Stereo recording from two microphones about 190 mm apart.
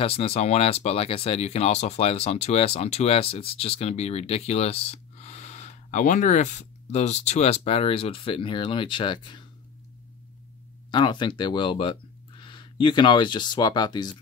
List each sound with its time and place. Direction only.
0.0 s speech: 30° left (ahead or behind)
10.9 s speech: 25° left (ahead or behind)